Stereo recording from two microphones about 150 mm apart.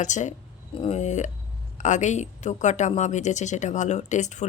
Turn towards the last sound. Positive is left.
turn(degrees=50)  # may be behind; listen again after turning